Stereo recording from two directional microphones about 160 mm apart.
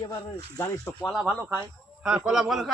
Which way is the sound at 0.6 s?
15° left (ahead or behind).